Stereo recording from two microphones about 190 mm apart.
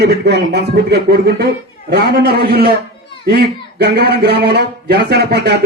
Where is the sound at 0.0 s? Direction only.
60° right (ahead or behind).